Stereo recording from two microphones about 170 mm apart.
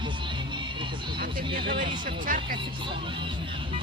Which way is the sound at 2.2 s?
55° right (ahead or behind).